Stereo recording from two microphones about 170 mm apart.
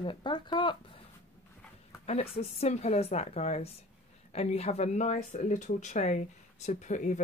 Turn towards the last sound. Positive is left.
turn(degrees=45)  # may be behind; listen again after turning